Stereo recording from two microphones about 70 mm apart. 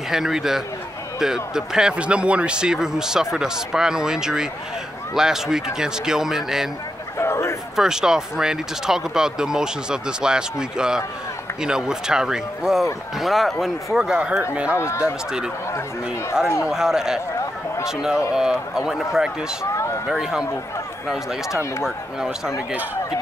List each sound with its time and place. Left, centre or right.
0.1 s speech: centre
7.2 s a sound: left
7.7 s speech: centre
16.6 s speech: centre
19.6 s run: left
20.1 s speech: centre
21.5 s speech: left